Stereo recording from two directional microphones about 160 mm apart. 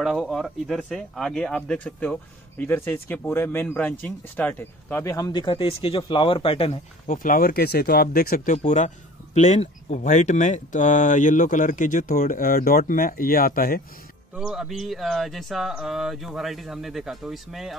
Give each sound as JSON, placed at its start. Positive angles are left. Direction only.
{"t": 0.0, "sound": "speech", "side_deg": 0}
{"t": 7.1, "sound": "speech", "side_deg": 60}
{"t": 14.3, "sound": "speech", "side_deg": 0}